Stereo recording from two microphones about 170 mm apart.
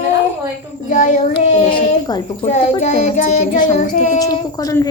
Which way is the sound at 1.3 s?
25° left (ahead or behind).